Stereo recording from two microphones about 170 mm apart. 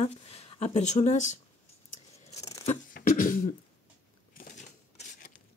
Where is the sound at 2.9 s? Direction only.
55° left (ahead or behind).